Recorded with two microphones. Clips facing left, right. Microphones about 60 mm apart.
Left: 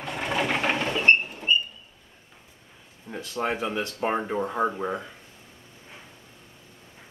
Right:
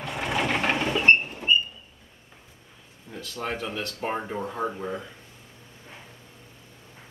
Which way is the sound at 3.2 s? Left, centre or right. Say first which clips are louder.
Left 4 dB; left.